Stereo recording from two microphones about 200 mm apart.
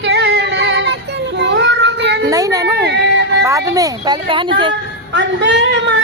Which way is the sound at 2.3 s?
15° right (ahead or behind).